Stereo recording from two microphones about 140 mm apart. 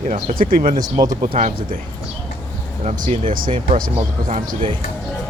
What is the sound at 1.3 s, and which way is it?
Speech, 50° right (ahead or behind).